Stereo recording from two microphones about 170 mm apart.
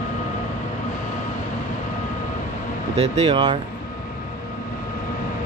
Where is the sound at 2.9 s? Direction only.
35° right (ahead or behind).